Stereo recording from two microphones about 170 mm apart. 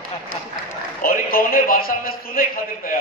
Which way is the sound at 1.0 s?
55° left (ahead or behind).